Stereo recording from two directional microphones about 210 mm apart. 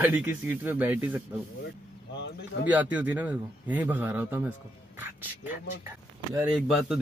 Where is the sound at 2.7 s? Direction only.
5° right (ahead or behind).